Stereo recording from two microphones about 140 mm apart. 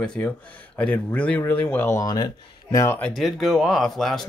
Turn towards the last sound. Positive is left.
turn(degrees=0)  # may be behind; listen again after turning